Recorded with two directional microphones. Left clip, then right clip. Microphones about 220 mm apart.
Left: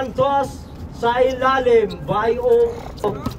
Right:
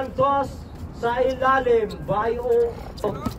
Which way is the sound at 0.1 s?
45° left (ahead or behind).